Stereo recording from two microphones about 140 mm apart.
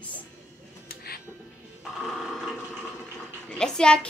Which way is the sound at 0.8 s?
90° left.